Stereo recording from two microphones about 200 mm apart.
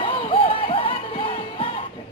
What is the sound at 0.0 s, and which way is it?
Music, 25° left (ahead or behind).